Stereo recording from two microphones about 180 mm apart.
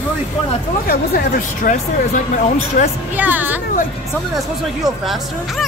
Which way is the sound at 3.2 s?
10° right (ahead or behind).